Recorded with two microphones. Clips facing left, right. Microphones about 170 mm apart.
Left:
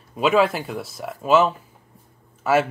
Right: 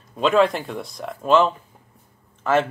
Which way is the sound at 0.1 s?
5° left (ahead or behind).